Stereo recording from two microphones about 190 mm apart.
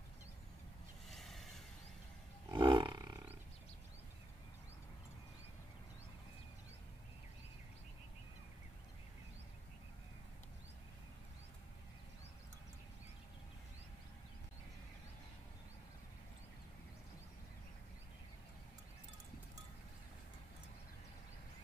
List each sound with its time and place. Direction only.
1.0 s boat: centre (ahead or behind)
2.5 s roar: 25° right (ahead or behind)